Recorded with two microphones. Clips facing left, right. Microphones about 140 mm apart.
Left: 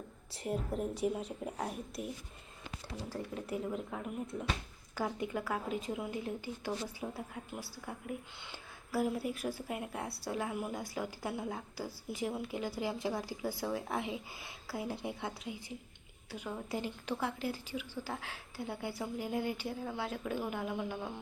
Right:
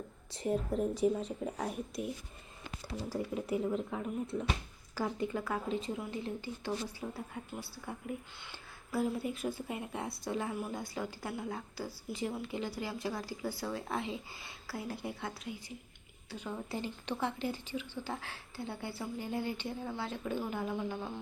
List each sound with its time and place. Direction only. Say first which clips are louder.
0.3 s speech: right 3 dB; 5° left (ahead or behind)
3.1 s speech: right 5 dB; 5° right (ahead or behind)
5.2 s speech: right 1 dB; 5° left (ahead or behind)
8.5 s speech: even; 10° left (ahead or behind)